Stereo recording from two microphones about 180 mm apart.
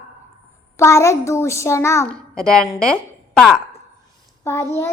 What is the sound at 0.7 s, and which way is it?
A child's voice, 15° left (ahead or behind).